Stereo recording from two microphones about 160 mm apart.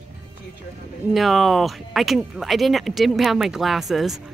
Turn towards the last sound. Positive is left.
turn(degrees=0)  # may be behind; listen again after turning